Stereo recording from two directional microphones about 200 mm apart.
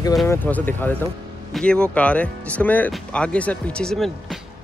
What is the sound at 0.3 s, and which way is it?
Speech, 10° left (ahead or behind).